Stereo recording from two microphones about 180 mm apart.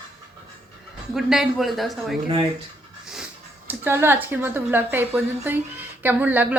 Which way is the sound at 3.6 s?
15° right (ahead or behind).